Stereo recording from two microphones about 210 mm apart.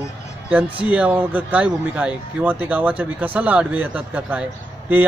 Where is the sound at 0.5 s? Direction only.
5° right (ahead or behind).